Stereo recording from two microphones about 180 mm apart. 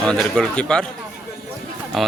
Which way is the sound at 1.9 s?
Centre (ahead or behind).